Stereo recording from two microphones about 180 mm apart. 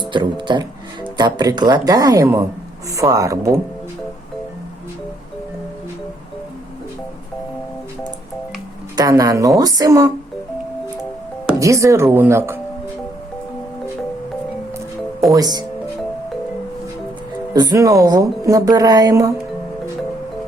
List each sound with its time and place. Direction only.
0.1 s speech: 25° right (ahead or behind)
9.0 s speech: 20° right (ahead or behind)
11.6 s speech: 15° right (ahead or behind)
15.3 s speech: 20° right (ahead or behind)
17.5 s speech: 20° right (ahead or behind)